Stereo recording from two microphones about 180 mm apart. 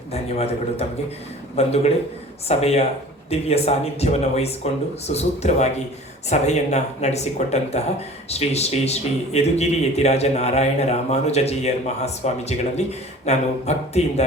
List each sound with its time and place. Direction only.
0.1 s speech: 35° left (ahead or behind)